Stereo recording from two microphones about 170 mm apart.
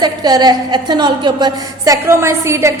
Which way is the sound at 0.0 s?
25° right (ahead or behind).